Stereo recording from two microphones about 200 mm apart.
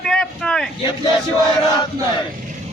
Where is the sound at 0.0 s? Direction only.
Centre (ahead or behind).